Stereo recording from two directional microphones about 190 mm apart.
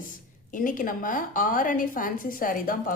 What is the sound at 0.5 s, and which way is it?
A woman's voice, 45° left (ahead or behind).